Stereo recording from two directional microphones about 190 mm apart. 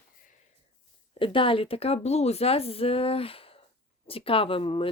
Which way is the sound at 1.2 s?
25° left (ahead or behind).